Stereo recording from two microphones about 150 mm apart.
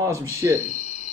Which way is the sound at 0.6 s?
50° left (ahead or behind).